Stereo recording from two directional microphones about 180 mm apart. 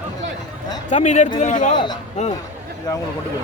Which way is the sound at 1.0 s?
40° left (ahead or behind).